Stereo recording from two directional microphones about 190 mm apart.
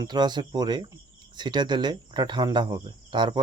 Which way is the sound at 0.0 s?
20° right (ahead or behind).